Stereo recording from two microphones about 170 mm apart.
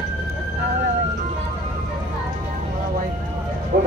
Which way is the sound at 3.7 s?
55° right (ahead or behind).